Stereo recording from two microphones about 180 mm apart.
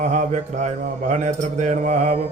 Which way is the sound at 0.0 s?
40° right (ahead or behind).